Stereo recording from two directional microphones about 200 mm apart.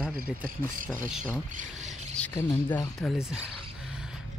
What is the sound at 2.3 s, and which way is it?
Speech, 15° left (ahead or behind).